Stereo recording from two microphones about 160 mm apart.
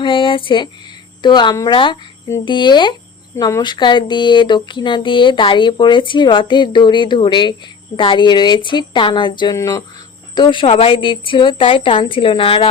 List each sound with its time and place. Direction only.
0.0 s a sound: 30° left (ahead or behind)
1.2 s speech: 30° left (ahead or behind)
9.6 s speech: 20° left (ahead or behind)
10.3 s a woman's voice: 30° left (ahead or behind)